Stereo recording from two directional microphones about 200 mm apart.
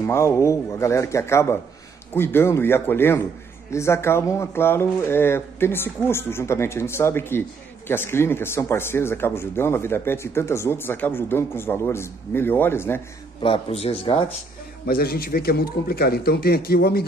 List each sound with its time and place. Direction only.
0.0 s speech: 15° left (ahead or behind)
13.4 s speech: 25° left (ahead or behind)
14.9 s a man's voice: 50° left (ahead or behind)